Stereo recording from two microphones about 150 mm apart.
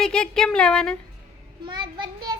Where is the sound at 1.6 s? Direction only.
30° right (ahead or behind).